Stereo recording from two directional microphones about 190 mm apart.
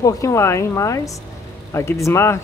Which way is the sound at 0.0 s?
15° left (ahead or behind).